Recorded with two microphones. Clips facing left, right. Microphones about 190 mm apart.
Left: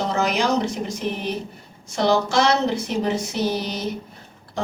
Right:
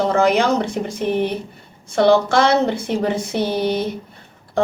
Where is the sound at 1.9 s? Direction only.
55° right (ahead or behind).